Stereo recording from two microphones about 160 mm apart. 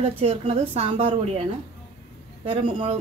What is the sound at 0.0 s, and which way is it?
A woman's voice, 40° right (ahead or behind).